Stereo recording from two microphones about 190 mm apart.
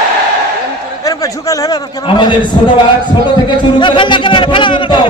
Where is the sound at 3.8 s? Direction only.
25° left (ahead or behind).